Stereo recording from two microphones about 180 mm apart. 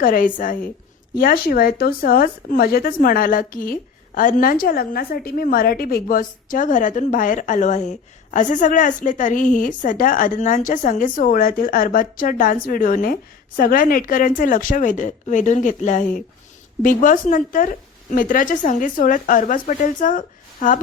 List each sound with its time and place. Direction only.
0.0 s speech: 50° left (ahead or behind)